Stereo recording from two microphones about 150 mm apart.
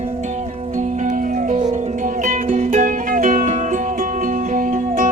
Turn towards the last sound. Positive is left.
turn(degrees=-60)  # may be behind; listen again after turning